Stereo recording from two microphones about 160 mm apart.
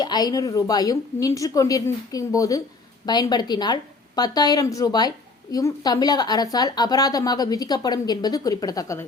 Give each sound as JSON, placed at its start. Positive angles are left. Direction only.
{"t": 0.0, "sound": "speech", "side_deg": 25}